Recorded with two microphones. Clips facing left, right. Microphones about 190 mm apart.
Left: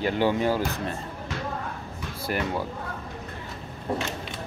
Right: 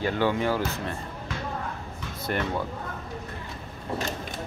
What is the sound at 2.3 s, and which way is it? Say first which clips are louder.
Speech: even; 10° left (ahead or behind).